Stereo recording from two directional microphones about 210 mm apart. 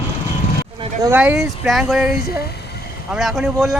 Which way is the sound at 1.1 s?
5° right (ahead or behind).